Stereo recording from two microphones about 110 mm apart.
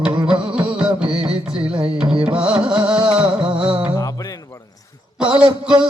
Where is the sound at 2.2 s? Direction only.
10° right (ahead or behind).